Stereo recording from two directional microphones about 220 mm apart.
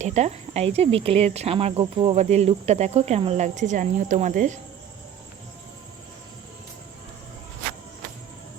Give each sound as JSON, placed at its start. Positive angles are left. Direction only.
{"t": 0.0, "sound": "speech", "side_deg": -30}